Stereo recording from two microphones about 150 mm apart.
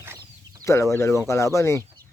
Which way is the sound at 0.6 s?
20° left (ahead or behind).